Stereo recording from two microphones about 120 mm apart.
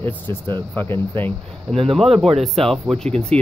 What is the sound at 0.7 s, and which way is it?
Speech, 20° left (ahead or behind).